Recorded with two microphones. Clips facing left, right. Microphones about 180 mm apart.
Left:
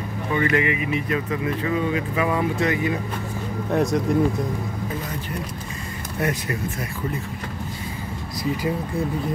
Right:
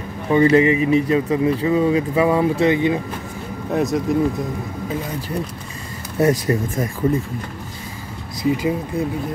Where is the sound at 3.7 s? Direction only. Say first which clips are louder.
Right 2 dB; centre (ahead or behind).